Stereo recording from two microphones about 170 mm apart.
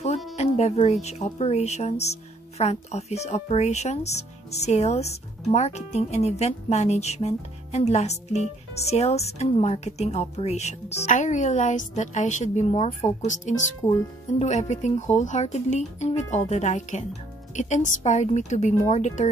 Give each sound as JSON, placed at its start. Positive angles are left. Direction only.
{"t": 0.0, "sound": "speech", "side_deg": 40}